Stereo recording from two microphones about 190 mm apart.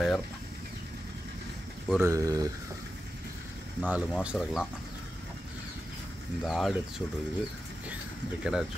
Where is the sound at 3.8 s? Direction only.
5° right (ahead or behind).